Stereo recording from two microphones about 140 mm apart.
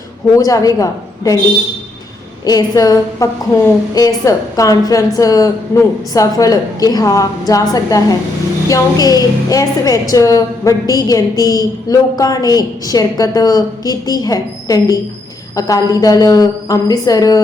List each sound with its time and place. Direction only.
0.3 s a woman's voice: 25° left (ahead or behind)
2.4 s a woman's voice: 25° left (ahead or behind)